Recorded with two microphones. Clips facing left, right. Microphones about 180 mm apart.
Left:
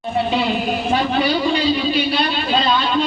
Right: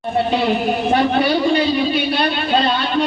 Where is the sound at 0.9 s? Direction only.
60° right (ahead or behind).